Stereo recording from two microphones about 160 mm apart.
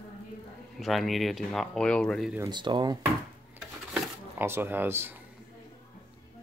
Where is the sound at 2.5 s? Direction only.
30° right (ahead or behind).